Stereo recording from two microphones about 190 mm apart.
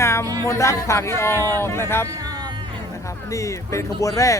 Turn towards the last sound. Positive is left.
turn(degrees=15)  # may be behind; listen again after turning